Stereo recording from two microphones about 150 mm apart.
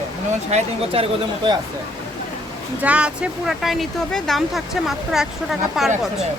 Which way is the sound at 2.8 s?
10° right (ahead or behind).